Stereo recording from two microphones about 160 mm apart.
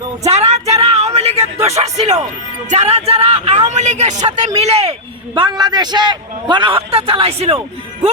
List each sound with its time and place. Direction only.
0.3 s speech: 40° right (ahead or behind)
0.8 s music: 40° right (ahead or behind)
2.6 s a man's voice: 45° right (ahead or behind)